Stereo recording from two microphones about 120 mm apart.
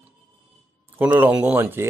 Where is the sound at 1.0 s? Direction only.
15° right (ahead or behind).